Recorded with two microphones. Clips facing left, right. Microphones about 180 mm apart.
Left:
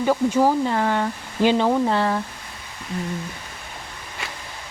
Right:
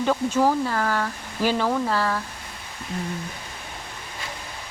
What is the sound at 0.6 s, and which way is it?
Speech, 25° left (ahead or behind).